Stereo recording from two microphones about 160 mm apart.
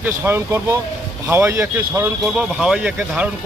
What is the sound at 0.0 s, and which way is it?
Speech, 15° right (ahead or behind).